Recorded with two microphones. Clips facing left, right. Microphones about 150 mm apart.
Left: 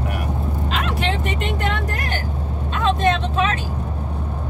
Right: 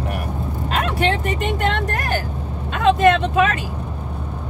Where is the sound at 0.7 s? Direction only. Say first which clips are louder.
Right 5 dB; 50° right (ahead or behind).